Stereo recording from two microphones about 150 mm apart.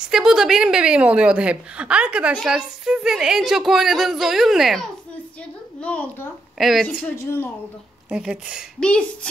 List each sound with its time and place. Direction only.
0.1 s a woman's voice: 5° right (ahead or behind)
6.6 s speech: centre (ahead or behind)
7.2 s a woman's voice: 15° left (ahead or behind)
8.1 s a woman's voice: 5° right (ahead or behind)
8.7 s a woman's voice: 5° left (ahead or behind)